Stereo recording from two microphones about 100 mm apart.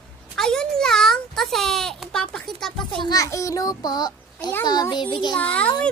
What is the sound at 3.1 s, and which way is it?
A child's voice, 30° left (ahead or behind).